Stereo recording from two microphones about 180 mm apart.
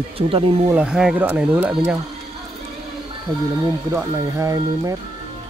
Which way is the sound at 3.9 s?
15° right (ahead or behind).